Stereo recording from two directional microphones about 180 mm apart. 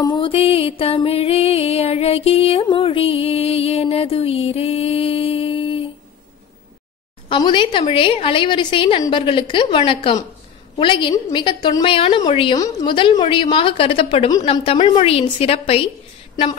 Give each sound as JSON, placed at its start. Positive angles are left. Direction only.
{"t": 0.0, "sound": "music", "side_deg": 25}
{"t": 7.2, "sound": "a woman's voice", "side_deg": 25}